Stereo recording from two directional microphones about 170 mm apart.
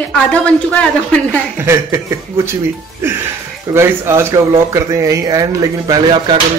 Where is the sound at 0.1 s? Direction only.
5° left (ahead or behind).